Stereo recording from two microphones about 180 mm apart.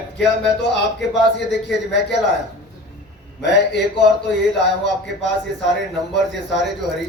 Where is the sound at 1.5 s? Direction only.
70° left (ahead or behind).